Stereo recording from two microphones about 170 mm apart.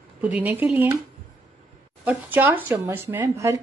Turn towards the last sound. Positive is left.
turn(degrees=-15)  # may be behind; listen again after turning